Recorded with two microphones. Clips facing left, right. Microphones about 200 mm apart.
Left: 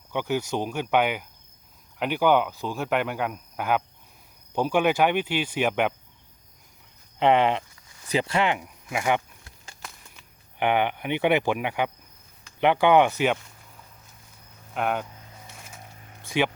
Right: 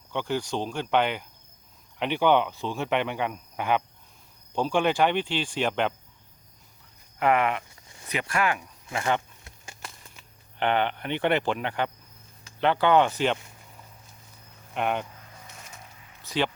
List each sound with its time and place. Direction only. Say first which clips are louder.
0.1 s speech: left 2 dB; 10° left (ahead or behind)
7.2 s speech: left 3 dB; 25° left (ahead or behind)
7.9 s a sound: right 3 dB; 25° right (ahead or behind)
8.1 s speech: left 3 dB; 25° left (ahead or behind)
10.6 s speech: left 2 dB; 10° left (ahead or behind)
14.7 s speech: left 1 dB; centre (ahead or behind)